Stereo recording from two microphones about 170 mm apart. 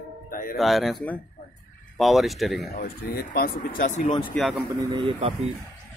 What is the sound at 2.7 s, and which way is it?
Speech, 60° left (ahead or behind).